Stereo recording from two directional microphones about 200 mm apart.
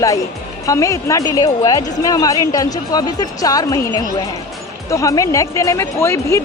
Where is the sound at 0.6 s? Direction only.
15° left (ahead or behind).